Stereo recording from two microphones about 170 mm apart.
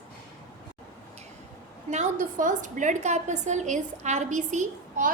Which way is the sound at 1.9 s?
45° right (ahead or behind).